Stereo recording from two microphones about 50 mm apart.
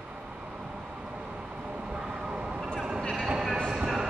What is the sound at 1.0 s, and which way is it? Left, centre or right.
Vehicle, right.